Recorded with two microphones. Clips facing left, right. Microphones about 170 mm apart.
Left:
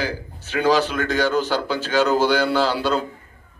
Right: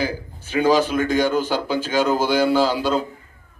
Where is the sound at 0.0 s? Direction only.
10° right (ahead or behind).